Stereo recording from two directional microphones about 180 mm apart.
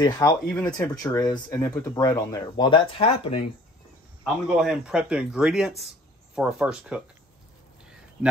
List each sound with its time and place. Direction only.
0.0 s speech: 20° left (ahead or behind)
0.5 s speech: 5° left (ahead or behind)
0.7 s speech: 20° left (ahead or behind)
4.2 s speech: 5° right (ahead or behind)
7.8 s a sound: 5° right (ahead or behind)